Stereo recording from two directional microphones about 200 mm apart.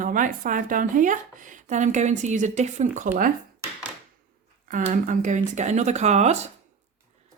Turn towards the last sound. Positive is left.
turn(degrees=-35)  # may be behind; listen again after turning